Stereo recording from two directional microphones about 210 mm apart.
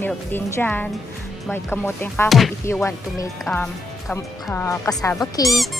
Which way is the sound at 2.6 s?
15° left (ahead or behind).